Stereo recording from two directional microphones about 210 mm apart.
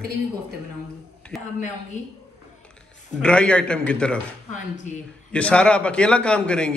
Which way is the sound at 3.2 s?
5° left (ahead or behind).